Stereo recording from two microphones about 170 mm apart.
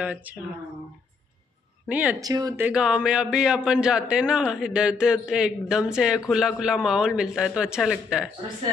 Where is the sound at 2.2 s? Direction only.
20° right (ahead or behind).